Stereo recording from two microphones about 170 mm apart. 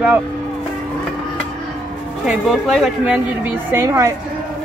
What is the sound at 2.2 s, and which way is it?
A woman's voice, centre (ahead or behind).